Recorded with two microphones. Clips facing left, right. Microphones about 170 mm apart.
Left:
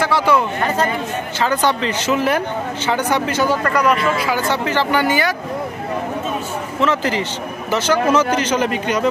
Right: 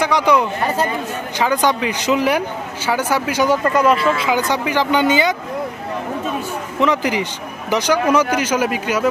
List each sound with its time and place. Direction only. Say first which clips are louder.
0.0 s speech: right 1 dB; 15° right (ahead or behind)
6.8 s speech: right 1 dB; 15° right (ahead or behind)